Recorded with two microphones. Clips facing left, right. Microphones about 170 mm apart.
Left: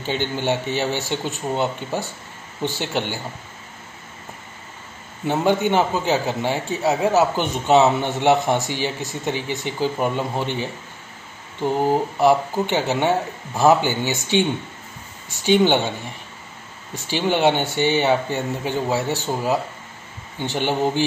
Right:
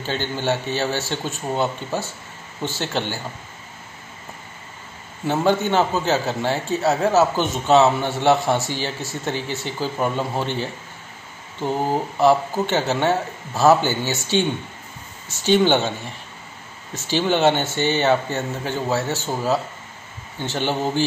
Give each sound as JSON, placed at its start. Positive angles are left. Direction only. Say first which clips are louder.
{"t": 0.0, "sound": "a man's voice", "louder": "left 1 dB", "side_deg": 15}
{"t": 5.2, "sound": "a man's voice", "louder": "even", "side_deg": 15}
{"t": 16.9, "sound": "a man's voice", "louder": "right 1 dB", "side_deg": 15}